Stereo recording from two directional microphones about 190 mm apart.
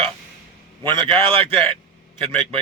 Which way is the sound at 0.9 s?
30° right (ahead or behind).